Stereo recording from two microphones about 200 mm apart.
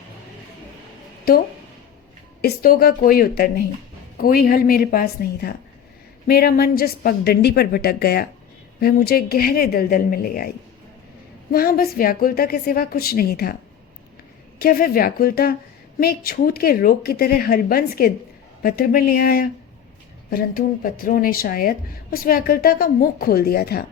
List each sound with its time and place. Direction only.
2.4 s speech: 50° left (ahead or behind)
11.5 s speech: 50° left (ahead or behind)
14.6 s speech: 45° left (ahead or behind)